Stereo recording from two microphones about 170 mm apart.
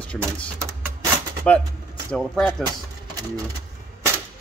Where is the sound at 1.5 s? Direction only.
10° left (ahead or behind).